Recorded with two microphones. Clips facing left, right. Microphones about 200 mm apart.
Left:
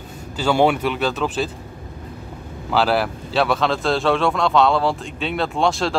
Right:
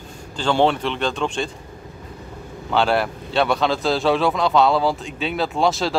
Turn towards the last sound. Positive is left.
turn(degrees=0)  # may be behind; listen again after turning